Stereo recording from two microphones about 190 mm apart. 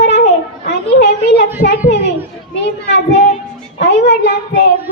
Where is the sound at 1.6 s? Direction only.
45° left (ahead or behind).